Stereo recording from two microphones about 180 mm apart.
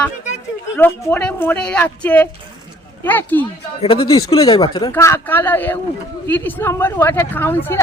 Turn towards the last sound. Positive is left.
turn(degrees=10)  # may be behind; listen again after turning